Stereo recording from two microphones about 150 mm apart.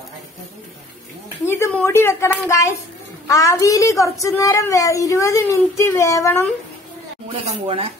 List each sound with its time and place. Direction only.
1.4 s a woman's voice: 15° left (ahead or behind)
7.2 s speech: 35° right (ahead or behind)